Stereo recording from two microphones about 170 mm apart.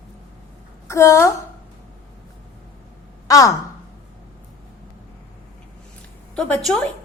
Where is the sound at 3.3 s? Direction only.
20° left (ahead or behind).